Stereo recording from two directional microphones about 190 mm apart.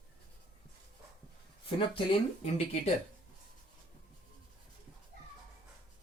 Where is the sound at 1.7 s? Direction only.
25° left (ahead or behind).